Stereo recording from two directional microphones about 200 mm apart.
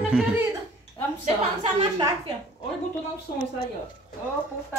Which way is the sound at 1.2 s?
25° right (ahead or behind).